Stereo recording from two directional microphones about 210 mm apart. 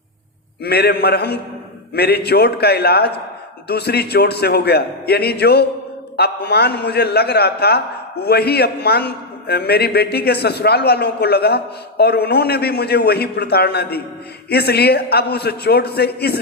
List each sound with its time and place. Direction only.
0.6 s a man's voice: 50° left (ahead or behind)